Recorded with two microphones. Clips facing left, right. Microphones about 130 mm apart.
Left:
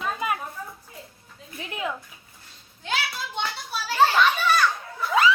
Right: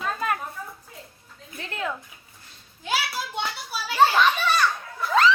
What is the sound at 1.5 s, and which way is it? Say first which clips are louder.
Speech: even; 15° left (ahead or behind).